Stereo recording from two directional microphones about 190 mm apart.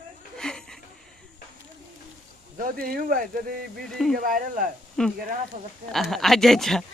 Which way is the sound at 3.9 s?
Centre (ahead or behind).